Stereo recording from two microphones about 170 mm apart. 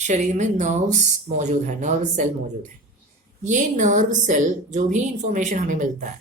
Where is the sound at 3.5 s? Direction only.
45° right (ahead or behind).